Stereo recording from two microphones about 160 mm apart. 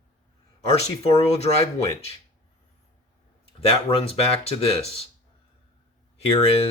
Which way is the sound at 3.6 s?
35° left (ahead or behind).